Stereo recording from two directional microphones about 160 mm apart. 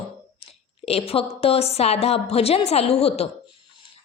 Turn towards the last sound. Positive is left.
turn(degrees=40)  # may be behind; listen again after turning